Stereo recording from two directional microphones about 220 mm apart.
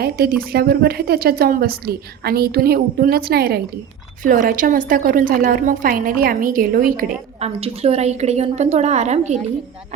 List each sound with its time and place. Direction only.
0.0 s a woman's voice: 45° right (ahead or behind)